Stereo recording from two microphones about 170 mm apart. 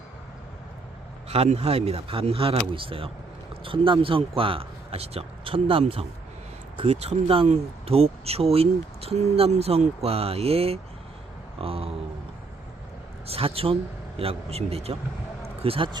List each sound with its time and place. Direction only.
1.3 s speech: 40° right (ahead or behind)
13.2 s speech: 35° right (ahead or behind)